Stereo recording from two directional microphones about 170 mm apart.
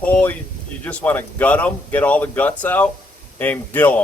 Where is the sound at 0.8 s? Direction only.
10° left (ahead or behind).